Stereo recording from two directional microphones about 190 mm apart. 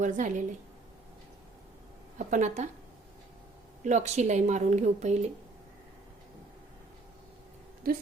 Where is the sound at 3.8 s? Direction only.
35° right (ahead or behind).